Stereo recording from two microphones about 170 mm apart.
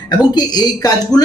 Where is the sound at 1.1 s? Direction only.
5° left (ahead or behind).